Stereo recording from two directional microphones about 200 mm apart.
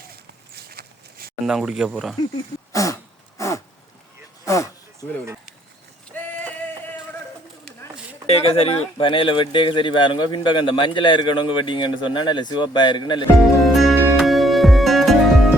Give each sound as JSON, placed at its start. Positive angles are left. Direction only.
{"t": 0.5, "sound": "walk", "side_deg": -50}
{"t": 1.5, "sound": "speech", "side_deg": 0}
{"t": 2.7, "sound": "throat clearing", "side_deg": 15}
{"t": 4.4, "sound": "a sound", "side_deg": 15}
{"t": 4.9, "sound": "speech", "side_deg": -15}
{"t": 6.1, "sound": "a sound", "side_deg": 10}
{"t": 8.3, "sound": "speech", "side_deg": 30}
{"t": 13.6, "sound": "music", "side_deg": 0}